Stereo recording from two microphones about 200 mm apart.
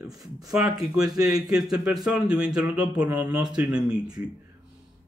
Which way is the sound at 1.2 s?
5° right (ahead or behind).